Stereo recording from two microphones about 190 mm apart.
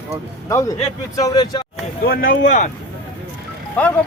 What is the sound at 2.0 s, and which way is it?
Speech, 50° left (ahead or behind).